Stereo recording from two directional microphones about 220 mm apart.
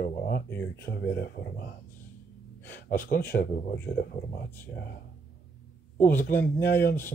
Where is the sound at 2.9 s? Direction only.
40° left (ahead or behind).